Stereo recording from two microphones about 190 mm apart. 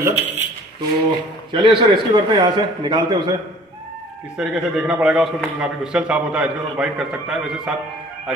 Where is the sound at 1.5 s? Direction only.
25° right (ahead or behind).